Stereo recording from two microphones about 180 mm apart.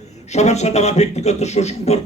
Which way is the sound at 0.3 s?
40° left (ahead or behind).